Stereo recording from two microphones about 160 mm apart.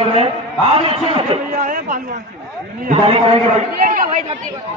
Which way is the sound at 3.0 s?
35° right (ahead or behind).